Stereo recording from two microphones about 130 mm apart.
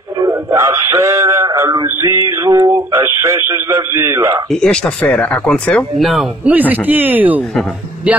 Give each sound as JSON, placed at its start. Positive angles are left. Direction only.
{"t": 0.2, "sound": "male singing", "side_deg": -20}
{"t": 4.5, "sound": "speech", "side_deg": 5}
{"t": 6.7, "sound": "speech", "side_deg": -15}